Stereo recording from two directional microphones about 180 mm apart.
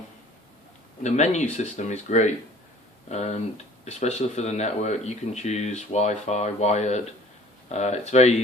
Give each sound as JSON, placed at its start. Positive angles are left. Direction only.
{"t": 1.0, "sound": "speech", "side_deg": 40}